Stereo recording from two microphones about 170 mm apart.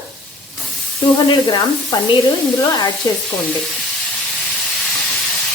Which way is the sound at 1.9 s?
25° left (ahead or behind).